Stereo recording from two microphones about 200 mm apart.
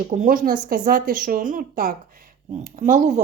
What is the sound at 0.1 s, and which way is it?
Speech, 40° right (ahead or behind).